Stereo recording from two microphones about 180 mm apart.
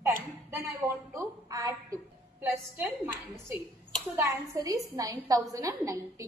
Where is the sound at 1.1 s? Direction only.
20° right (ahead or behind).